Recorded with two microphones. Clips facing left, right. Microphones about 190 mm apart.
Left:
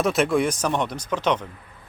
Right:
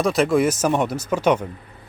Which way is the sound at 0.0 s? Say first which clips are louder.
Right 3 dB; centre (ahead or behind).